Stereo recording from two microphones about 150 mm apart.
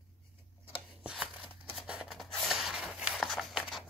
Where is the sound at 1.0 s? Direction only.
5° right (ahead or behind).